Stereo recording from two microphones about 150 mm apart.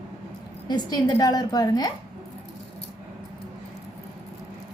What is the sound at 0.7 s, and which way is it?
A woman's voice, 30° left (ahead or behind).